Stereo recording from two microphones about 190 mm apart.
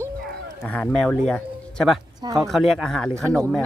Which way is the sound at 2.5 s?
Centre (ahead or behind).